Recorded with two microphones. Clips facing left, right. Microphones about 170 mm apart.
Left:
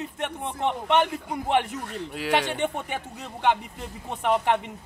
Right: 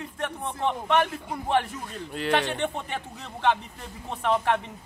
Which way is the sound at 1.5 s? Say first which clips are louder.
Left 1 dB; 20° left (ahead or behind).